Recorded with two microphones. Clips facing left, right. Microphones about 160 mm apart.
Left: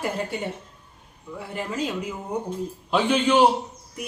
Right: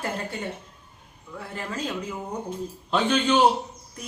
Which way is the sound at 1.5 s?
15° left (ahead or behind).